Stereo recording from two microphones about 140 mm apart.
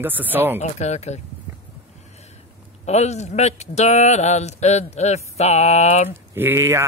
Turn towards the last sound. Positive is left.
turn(degrees=-20)  # may be behind; listen again after turning